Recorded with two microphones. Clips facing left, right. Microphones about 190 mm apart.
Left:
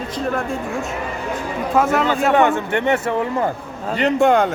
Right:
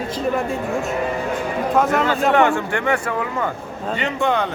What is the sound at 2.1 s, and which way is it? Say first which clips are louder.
A man's voice: left 1 dB; 15° left (ahead or behind).